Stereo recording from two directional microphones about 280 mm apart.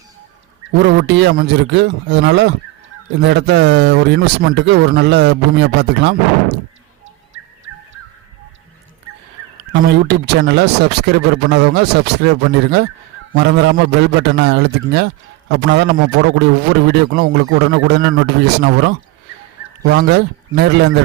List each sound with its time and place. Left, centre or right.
0.8 s speech: right
9.8 s speech: right